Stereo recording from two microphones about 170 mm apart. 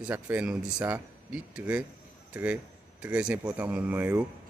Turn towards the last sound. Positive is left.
turn(degrees=-10)  # may be behind; listen again after turning